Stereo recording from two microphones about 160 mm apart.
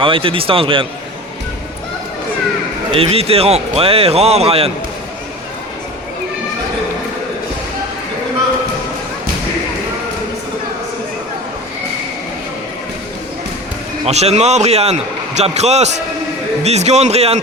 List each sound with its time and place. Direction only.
0.0 s a man's voice: 35° right (ahead or behind)
2.9 s a man's voice: 35° right (ahead or behind)
14.0 s a man's voice: 40° right (ahead or behind)